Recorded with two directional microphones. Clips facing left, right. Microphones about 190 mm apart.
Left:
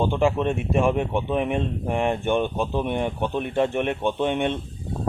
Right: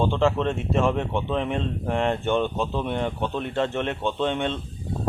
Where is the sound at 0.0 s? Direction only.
15° left (ahead or behind).